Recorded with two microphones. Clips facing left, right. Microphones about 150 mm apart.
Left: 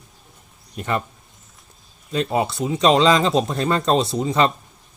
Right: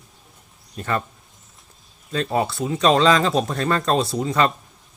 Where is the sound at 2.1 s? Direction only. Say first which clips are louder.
Left 1 dB; 20° left (ahead or behind).